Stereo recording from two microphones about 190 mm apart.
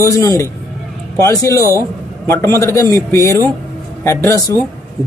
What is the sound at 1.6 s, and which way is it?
Speech, 15° right (ahead or behind).